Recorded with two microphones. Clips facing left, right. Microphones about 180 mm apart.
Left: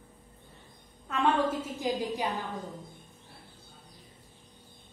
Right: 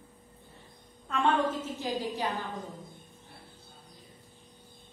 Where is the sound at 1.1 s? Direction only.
5° left (ahead or behind).